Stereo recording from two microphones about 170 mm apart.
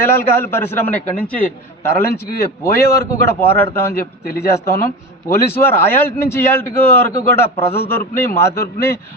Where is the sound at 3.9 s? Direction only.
60° left (ahead or behind).